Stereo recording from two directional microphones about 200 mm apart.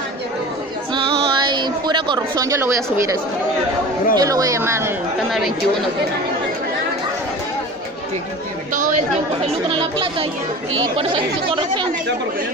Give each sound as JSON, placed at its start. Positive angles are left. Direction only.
{"t": 0.9, "sound": "a sound", "side_deg": -25}
{"t": 4.1, "sound": "speech", "side_deg": -15}
{"t": 11.0, "sound": "speech", "side_deg": -25}